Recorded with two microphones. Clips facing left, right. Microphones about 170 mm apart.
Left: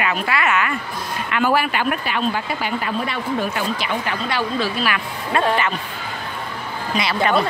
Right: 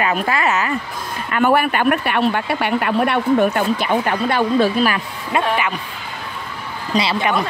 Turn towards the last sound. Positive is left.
turn(degrees=-15)  # may be behind; listen again after turning